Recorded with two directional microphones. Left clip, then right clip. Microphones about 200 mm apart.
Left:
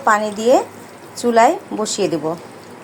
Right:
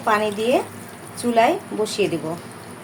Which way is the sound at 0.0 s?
30° left (ahead or behind).